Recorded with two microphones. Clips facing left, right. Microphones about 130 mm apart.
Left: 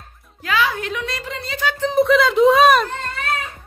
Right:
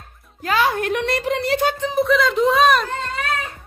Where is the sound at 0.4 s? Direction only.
45° right (ahead or behind); by 1.7 s 70° right (ahead or behind).